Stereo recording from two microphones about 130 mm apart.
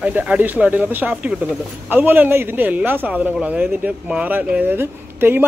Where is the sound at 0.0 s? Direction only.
10° right (ahead or behind).